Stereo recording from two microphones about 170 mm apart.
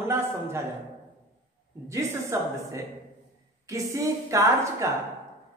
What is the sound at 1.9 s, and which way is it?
Speech, 15° right (ahead or behind).